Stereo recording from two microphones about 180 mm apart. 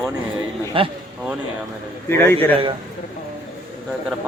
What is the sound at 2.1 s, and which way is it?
Speech, 10° left (ahead or behind).